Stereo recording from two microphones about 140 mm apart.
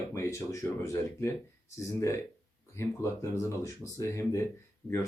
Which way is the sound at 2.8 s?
20° left (ahead or behind).